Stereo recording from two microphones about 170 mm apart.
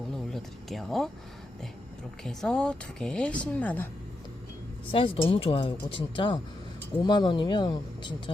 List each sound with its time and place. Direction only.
0.3 s a sound: centre (ahead or behind)
2.2 s a woman's voice: 5° left (ahead or behind)
4.9 s a woman's voice: 30° left (ahead or behind)